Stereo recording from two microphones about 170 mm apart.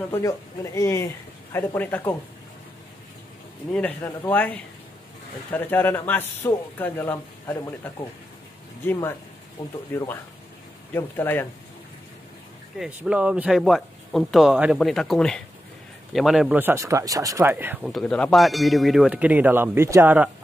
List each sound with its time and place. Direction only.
0.7 s speech: 15° left (ahead or behind)
3.7 s speech: 10° left (ahead or behind)
9.6 s speech: 30° left (ahead or behind)
10.9 s speech: 10° left (ahead or behind)
12.7 s speech: 5° right (ahead or behind)
17.9 s speech: 5° left (ahead or behind)